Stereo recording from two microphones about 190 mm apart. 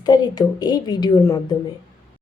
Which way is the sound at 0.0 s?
20° left (ahead or behind).